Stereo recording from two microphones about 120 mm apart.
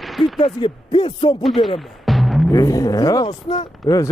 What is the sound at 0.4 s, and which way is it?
Speech, 45° left (ahead or behind).